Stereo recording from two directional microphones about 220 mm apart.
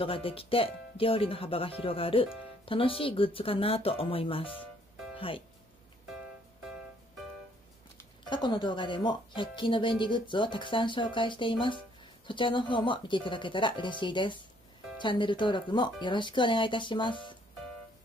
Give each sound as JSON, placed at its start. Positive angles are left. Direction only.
{"t": 0.0, "sound": "speech", "side_deg": 25}
{"t": 5.1, "sound": "music", "side_deg": 25}
{"t": 8.3, "sound": "speech", "side_deg": 20}